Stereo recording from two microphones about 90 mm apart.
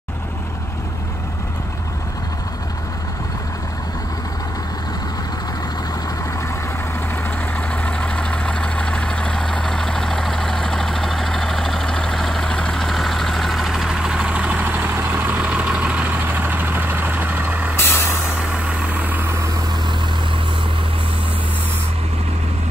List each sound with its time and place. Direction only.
7.2 s vehicle: 20° left (ahead or behind); by 17.7 s 15° right (ahead or behind)
17.7 s vehicle: 25° left (ahead or behind)
18.4 s vehicle: 10° right (ahead or behind)